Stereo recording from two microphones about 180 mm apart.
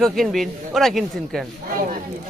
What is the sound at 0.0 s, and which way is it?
Speech, centre (ahead or behind).